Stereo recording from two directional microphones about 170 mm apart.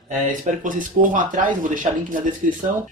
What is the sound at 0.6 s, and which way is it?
Speech, 50° right (ahead or behind).